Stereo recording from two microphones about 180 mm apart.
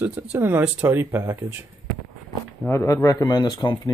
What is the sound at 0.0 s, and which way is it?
Speech, 10° right (ahead or behind).